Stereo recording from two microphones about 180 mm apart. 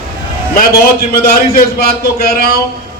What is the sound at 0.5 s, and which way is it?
A man's voice, 60° left (ahead or behind).